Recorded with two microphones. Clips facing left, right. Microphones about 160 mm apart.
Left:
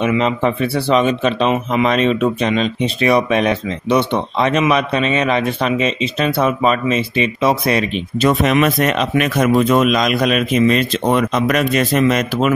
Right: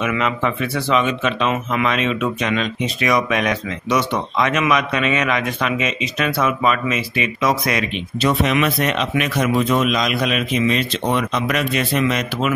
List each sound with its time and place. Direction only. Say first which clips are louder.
0.0 s speech: left 5 dB; 30° left (ahead or behind)
8.2 s a man's voice: left 4 dB; 45° left (ahead or behind)